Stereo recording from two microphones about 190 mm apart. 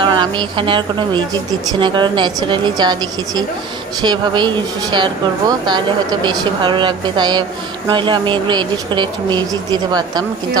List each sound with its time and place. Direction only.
0.0 s speech: 25° right (ahead or behind)